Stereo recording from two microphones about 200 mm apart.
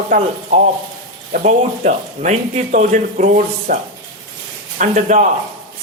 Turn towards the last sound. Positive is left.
turn(degrees=-40)  # may be behind; listen again after turning